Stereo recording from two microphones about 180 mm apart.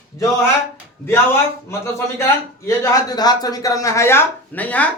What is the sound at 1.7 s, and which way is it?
Speech, 15° left (ahead or behind).